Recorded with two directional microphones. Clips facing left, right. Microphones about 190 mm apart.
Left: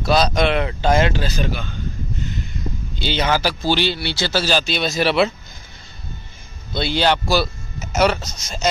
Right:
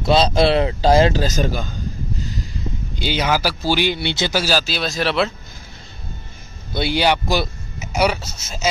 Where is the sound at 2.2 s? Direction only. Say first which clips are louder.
Even; 35° right (ahead or behind).